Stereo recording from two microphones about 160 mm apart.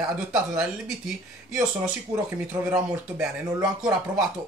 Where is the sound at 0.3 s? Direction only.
5° right (ahead or behind).